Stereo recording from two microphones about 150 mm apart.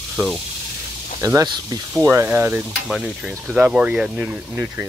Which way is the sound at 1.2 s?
25° right (ahead or behind).